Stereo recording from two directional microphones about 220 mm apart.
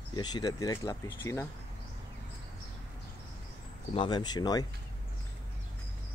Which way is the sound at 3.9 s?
20° left (ahead or behind).